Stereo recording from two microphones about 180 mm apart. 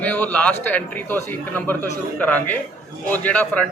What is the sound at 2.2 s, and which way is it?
A man's voice, 10° left (ahead or behind).